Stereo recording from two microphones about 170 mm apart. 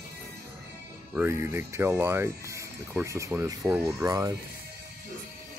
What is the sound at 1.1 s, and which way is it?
Speech, 15° right (ahead or behind).